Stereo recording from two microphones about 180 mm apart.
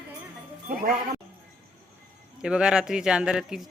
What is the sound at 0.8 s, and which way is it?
Speech, 55° right (ahead or behind).